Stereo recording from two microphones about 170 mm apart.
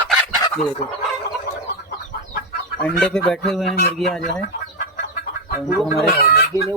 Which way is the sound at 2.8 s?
5° left (ahead or behind).